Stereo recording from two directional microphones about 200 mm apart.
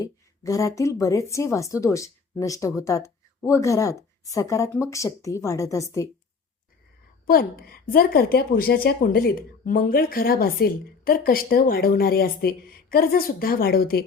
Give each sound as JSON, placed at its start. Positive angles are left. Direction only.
{"t": 0.0, "sound": "a woman's voice", "side_deg": 15}
{"t": 7.3, "sound": "a woman's voice", "side_deg": 45}